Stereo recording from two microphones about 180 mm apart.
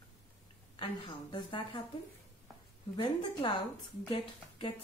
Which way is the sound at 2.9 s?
25° left (ahead or behind).